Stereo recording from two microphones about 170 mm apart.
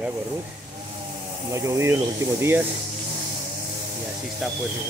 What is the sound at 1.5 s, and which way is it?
Speech, 20° right (ahead or behind).